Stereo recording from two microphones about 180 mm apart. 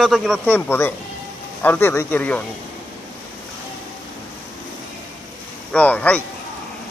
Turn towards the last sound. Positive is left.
turn(degrees=10)  # may be behind; listen again after turning